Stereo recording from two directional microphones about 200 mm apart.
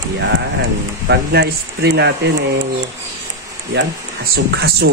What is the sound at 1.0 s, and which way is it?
Speech, 55° right (ahead or behind).